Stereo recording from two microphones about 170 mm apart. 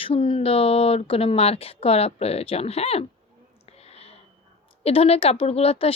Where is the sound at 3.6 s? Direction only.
35° left (ahead or behind).